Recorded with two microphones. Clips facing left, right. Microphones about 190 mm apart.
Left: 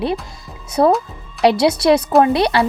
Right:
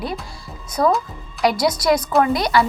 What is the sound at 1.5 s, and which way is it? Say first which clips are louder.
A woman's voice: left 5 dB; 65° left (ahead or behind).